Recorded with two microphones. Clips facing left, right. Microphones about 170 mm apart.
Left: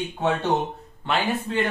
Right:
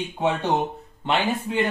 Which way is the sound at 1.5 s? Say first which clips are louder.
Right 2 dB; 15° right (ahead or behind).